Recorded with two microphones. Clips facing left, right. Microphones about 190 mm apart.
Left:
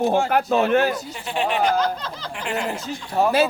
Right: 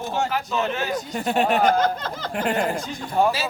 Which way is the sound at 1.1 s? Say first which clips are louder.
Right 5 dB; 45° right (ahead or behind).